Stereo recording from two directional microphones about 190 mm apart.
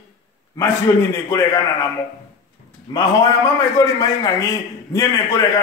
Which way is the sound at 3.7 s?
20° left (ahead or behind).